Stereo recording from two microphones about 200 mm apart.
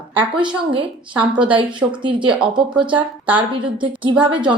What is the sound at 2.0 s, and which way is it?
Speech, 25° right (ahead or behind).